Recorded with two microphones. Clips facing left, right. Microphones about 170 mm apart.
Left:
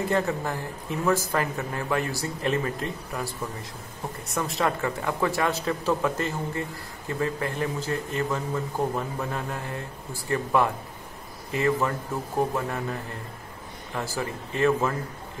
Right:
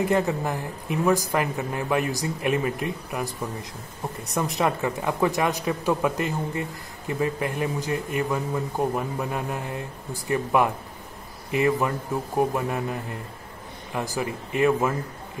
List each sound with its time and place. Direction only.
0.0 s a man's voice: 15° right (ahead or behind)